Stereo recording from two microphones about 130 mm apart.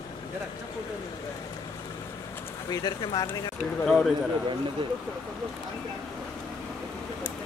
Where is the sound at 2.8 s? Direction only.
30° left (ahead or behind).